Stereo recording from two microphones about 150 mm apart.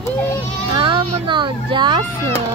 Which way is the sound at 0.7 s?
30° right (ahead or behind).